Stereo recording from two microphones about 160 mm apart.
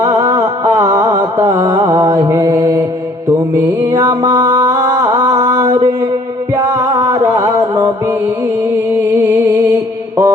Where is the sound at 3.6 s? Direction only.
20° right (ahead or behind).